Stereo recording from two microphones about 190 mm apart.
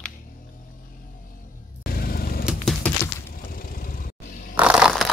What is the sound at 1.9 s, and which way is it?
Vehicle, 50° left (ahead or behind).